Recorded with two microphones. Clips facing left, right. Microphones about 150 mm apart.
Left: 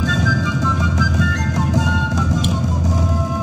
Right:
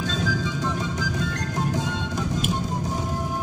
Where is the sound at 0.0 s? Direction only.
90° left.